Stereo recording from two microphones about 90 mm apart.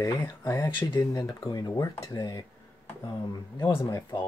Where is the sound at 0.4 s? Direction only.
40° left (ahead or behind).